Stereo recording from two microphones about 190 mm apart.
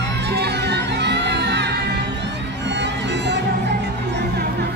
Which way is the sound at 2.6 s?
65° right (ahead or behind).